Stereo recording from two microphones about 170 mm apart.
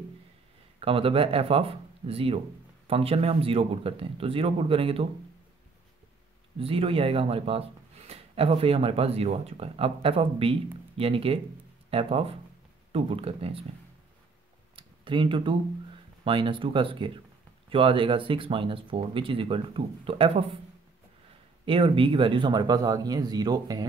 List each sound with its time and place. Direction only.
0.7 s speech: 35° right (ahead or behind)
6.6 s speech: 35° right (ahead or behind)
14.8 s a sound: 30° right (ahead or behind)
16.3 s speech: 30° right (ahead or behind)
21.6 s a man's voice: 30° right (ahead or behind)